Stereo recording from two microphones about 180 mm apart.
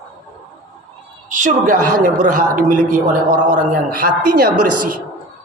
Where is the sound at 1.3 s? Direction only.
45° right (ahead or behind).